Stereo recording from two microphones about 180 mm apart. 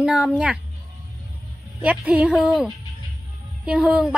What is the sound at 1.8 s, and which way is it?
Speech, 5° right (ahead or behind).